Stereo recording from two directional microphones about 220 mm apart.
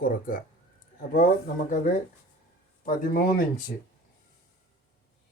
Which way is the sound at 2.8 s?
40° left (ahead or behind).